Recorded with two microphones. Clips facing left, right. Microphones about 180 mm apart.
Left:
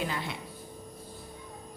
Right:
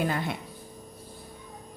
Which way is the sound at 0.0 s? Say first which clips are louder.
Right 5 dB; 50° right (ahead or behind).